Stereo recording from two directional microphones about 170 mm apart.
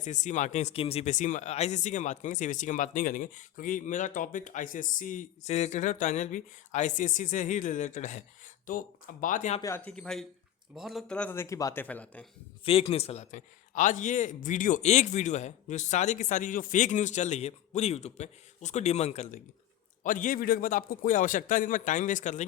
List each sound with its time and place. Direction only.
0.0 s speech: 45° left (ahead or behind)
9.6 s speech: 15° left (ahead or behind)
12.6 s speech: 35° left (ahead or behind)